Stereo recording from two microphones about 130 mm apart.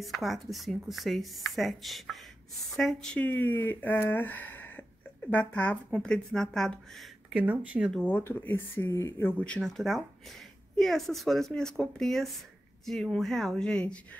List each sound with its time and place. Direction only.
0.0 s speech: centre (ahead or behind)
7.3 s speech: 10° right (ahead or behind)
7.9 s speech: 15° left (ahead or behind)
9.4 s speech: 5° left (ahead or behind)